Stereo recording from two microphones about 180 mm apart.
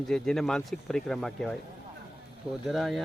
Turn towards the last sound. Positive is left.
turn(degrees=0)  # may be behind; listen again after turning